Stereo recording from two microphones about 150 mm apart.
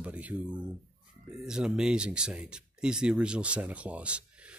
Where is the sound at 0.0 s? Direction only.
10° right (ahead or behind).